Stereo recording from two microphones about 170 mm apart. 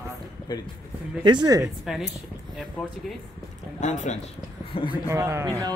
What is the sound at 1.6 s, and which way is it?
Speech, centre (ahead or behind).